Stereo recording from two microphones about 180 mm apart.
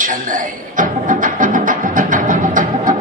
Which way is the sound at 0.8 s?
45° right (ahead or behind).